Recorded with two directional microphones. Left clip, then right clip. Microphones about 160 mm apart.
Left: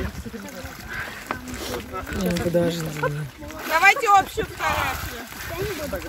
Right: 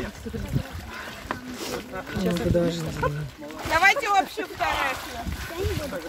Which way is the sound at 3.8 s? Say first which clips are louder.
Left 4 dB; 20° right (ahead or behind).